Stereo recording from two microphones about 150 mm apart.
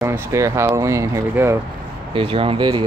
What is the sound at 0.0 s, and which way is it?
Speech, 20° right (ahead or behind).